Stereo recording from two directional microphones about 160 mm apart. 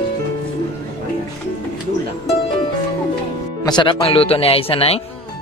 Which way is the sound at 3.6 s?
30° left (ahead or behind).